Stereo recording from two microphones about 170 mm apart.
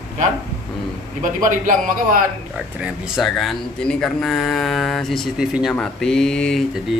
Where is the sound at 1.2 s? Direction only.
50° right (ahead or behind).